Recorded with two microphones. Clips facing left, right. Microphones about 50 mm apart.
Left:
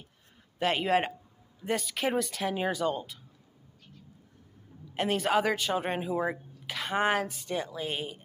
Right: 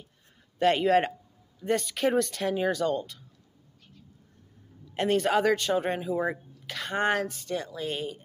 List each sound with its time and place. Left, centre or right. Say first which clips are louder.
0.6 s speech: right 4 dB; centre
4.9 s speech: right 2 dB; centre